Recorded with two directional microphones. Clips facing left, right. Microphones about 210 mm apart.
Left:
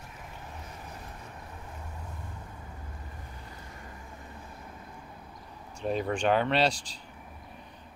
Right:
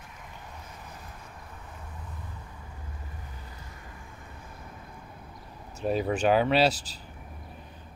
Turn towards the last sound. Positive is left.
turn(degrees=-5)  # may be behind; listen again after turning